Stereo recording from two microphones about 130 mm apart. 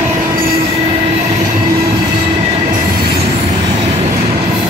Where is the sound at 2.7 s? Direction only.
90° right.